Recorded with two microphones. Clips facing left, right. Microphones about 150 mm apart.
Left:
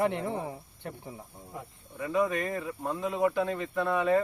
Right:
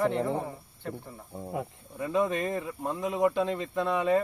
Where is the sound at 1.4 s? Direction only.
85° right.